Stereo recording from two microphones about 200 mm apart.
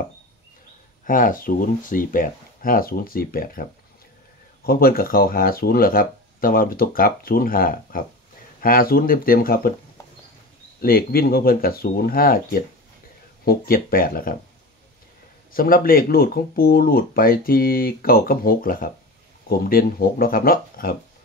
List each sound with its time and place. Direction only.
1.0 s speech: 40° left (ahead or behind)
4.6 s speech: 45° left (ahead or behind)
10.8 s speech: 50° left (ahead or behind)
15.5 s speech: 45° left (ahead or behind)